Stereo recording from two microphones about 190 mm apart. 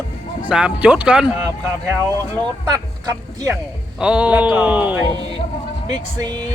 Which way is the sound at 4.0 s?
5° right (ahead or behind).